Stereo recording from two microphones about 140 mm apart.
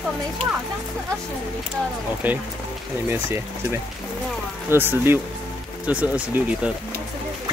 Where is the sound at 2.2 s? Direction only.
10° right (ahead or behind).